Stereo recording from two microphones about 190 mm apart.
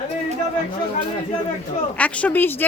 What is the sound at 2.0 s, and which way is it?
Speech, 5° left (ahead or behind).